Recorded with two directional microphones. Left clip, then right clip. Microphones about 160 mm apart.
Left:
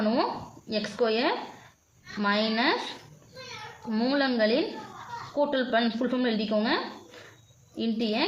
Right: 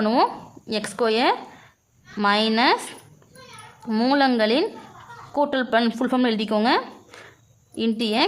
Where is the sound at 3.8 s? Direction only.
35° right (ahead or behind).